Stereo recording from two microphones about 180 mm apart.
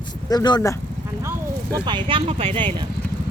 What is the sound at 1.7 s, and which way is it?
Speech, 25° right (ahead or behind).